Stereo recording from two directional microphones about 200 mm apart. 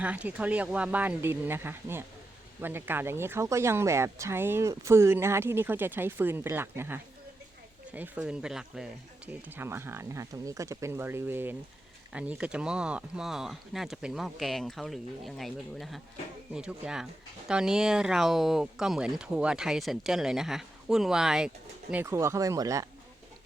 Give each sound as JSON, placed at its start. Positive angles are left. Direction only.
{"t": 0.0, "sound": "speech", "side_deg": -5}